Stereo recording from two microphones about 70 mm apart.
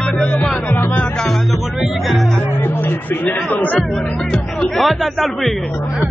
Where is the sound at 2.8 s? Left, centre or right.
Left.